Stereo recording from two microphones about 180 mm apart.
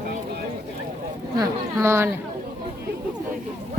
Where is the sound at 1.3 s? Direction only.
15° right (ahead or behind).